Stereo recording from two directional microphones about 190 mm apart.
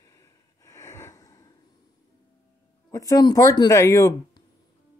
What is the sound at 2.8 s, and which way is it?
Speech, 20° left (ahead or behind).